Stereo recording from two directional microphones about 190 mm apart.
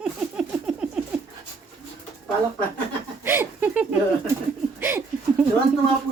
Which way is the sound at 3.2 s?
10° right (ahead or behind).